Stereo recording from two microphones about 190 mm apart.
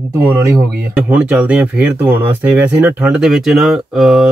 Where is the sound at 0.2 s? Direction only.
10° right (ahead or behind).